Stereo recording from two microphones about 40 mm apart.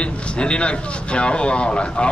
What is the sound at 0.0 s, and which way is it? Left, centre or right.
Speech, left.